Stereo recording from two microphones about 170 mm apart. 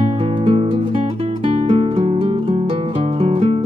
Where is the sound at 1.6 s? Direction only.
35° right (ahead or behind).